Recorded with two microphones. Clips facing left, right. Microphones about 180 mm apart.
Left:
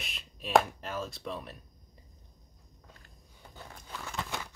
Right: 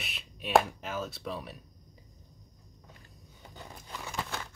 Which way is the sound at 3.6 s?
10° right (ahead or behind).